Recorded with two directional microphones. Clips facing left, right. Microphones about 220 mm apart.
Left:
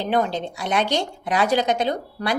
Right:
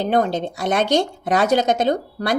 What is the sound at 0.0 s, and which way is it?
A woman's voice, 45° right (ahead or behind).